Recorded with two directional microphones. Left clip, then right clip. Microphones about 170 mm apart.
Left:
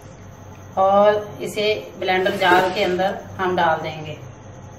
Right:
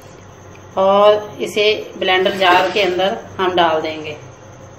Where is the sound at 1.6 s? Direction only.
45° right (ahead or behind).